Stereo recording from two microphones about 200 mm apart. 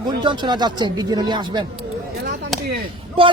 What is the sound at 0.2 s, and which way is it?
Speech, 20° right (ahead or behind).